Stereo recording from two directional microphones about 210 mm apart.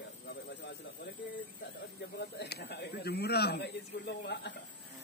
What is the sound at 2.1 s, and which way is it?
Speech, 50° left (ahead or behind).